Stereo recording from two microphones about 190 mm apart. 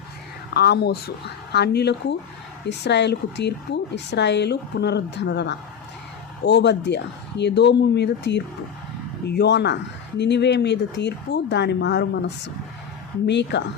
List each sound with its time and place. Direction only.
0.5 s speech: 60° left (ahead or behind)